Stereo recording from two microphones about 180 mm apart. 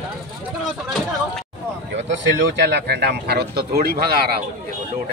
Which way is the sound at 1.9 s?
85° right.